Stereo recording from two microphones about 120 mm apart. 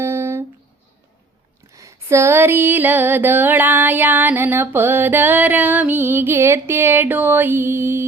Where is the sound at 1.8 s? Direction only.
25° right (ahead or behind).